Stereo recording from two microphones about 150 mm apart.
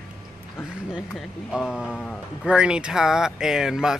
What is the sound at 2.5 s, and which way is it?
Speech, 5° right (ahead or behind).